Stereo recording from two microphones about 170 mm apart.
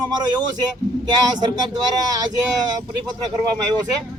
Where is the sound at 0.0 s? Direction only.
25° right (ahead or behind).